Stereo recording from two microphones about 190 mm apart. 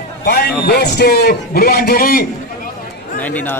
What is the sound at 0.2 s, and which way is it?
A man's voice, 60° left (ahead or behind).